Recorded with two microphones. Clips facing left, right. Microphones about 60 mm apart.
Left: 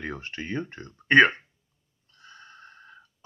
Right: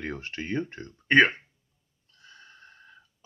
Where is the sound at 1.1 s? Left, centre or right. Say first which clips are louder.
Left 2 dB; left.